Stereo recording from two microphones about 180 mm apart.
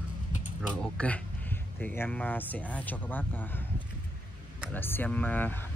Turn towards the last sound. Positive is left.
turn(degrees=10)  # may be behind; listen again after turning